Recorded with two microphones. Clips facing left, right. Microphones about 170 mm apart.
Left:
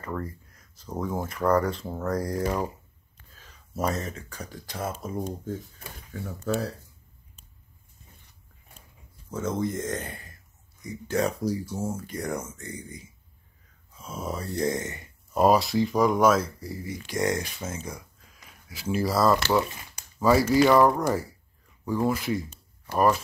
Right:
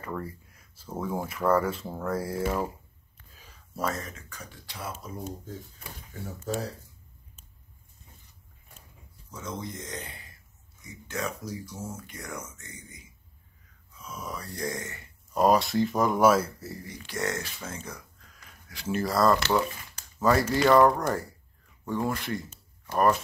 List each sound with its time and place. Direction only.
0.0 s speech: 10° right (ahead or behind)
3.7 s speech: 25° left (ahead or behind)
4.3 s speech: 35° left (ahead or behind)
9.3 s speech: 50° left (ahead or behind)
10.8 s speech: 35° left (ahead or behind); by 15.0 s 20° left (ahead or behind)
15.3 s speech: 5° left (ahead or behind)
16.7 s speech: 10° left (ahead or behind)
18.7 s speech: 5° left (ahead or behind)
22.5 s a sound: 5° left (ahead or behind)